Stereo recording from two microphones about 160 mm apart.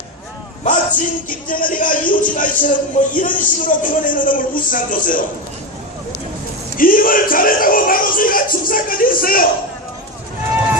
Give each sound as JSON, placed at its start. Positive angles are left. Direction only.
{"t": 0.6, "sound": "a man's voice", "side_deg": 55}
{"t": 6.7, "sound": "a man's voice", "side_deg": 60}